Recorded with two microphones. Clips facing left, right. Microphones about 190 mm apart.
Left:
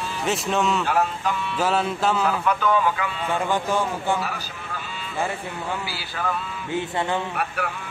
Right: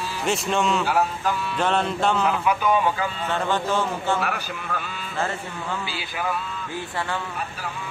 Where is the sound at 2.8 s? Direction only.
35° right (ahead or behind).